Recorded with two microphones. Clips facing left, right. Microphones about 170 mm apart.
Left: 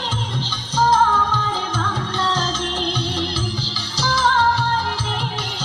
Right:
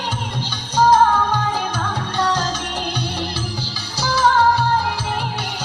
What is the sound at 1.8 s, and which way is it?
Music, 15° right (ahead or behind).